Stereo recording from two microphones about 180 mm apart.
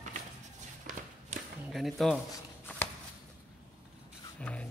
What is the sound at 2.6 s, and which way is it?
Shuffling cards, 10° left (ahead or behind).